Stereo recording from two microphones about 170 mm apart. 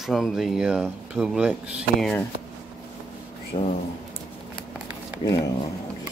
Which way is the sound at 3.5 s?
40° left (ahead or behind).